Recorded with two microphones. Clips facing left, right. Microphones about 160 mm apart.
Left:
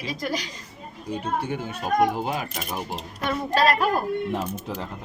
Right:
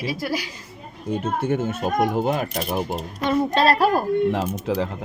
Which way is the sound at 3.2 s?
25° right (ahead or behind).